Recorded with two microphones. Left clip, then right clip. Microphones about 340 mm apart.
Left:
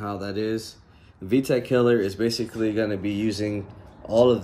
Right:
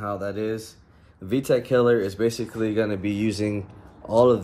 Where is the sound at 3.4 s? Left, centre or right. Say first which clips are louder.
Right 1 dB; right.